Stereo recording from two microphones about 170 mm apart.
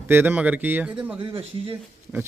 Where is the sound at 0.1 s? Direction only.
10° right (ahead or behind).